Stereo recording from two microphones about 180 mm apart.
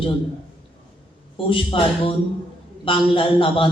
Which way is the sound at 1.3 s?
30° left (ahead or behind).